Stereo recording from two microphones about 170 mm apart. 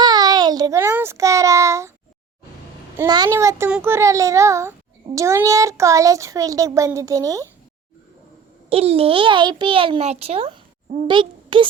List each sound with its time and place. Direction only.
0.0 s a sound: 25° right (ahead or behind)
0.8 s a child's voice: 15° right (ahead or behind)
3.1 s a child's voice: 20° right (ahead or behind)
8.7 s a child's voice: 35° right (ahead or behind)